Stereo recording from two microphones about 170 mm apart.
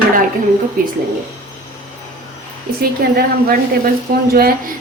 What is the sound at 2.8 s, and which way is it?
A woman's voice, 60° right (ahead or behind).